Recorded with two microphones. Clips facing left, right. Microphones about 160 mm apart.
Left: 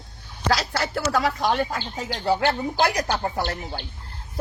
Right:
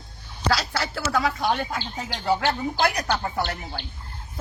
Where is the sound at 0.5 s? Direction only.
50° left (ahead or behind).